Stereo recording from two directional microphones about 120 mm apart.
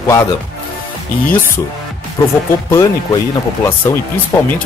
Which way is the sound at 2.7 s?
30° left (ahead or behind).